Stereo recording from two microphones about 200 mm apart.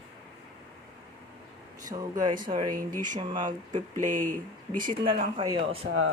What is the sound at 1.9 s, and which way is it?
Speech, 30° right (ahead or behind).